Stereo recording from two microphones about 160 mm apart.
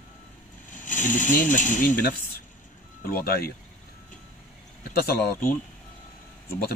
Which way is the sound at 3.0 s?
70° left (ahead or behind).